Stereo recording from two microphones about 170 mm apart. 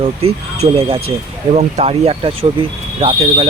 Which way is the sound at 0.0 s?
35° right (ahead or behind).